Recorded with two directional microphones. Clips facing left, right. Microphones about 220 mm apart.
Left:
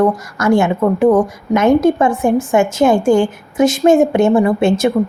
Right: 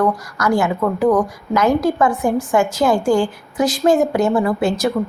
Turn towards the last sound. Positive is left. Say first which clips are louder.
# left 5 dB
turn(degrees=25)  # may be behind; listen again after turning